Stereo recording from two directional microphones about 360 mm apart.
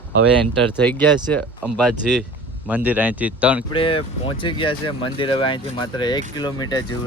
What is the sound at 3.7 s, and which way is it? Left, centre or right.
Speech, centre.